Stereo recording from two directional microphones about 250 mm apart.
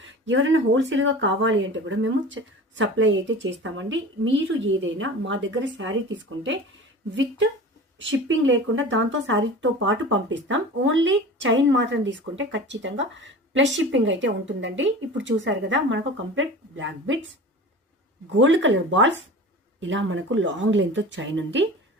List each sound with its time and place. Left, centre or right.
0.0 s speech: right
18.3 s speech: right